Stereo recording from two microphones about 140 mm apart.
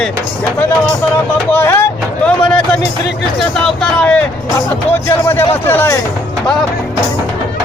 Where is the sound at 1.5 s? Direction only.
15° left (ahead or behind).